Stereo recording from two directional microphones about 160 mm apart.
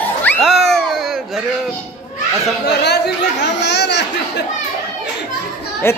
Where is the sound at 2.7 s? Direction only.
90° left.